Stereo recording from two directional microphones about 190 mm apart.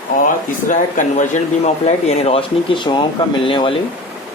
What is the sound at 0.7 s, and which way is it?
Speech, 40° left (ahead or behind).